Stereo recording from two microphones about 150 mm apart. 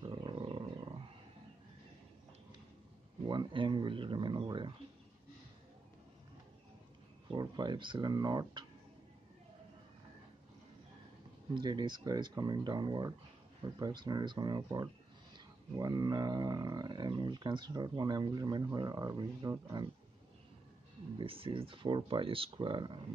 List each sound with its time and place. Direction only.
0.0 s wild animals: 35° right (ahead or behind)
3.3 s speech: 30° right (ahead or behind)
7.2 s speech: 30° right (ahead or behind)
11.5 s speech: 30° right (ahead or behind)
21.2 s speech: 35° right (ahead or behind)